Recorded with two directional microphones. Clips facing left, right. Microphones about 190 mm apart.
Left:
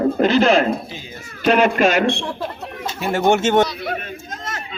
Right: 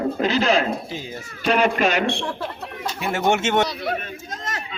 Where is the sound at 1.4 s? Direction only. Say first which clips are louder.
Left 4 dB; 50° left (ahead or behind).